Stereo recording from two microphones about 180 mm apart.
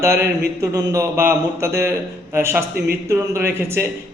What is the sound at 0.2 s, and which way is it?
A man's voice, 20° right (ahead or behind).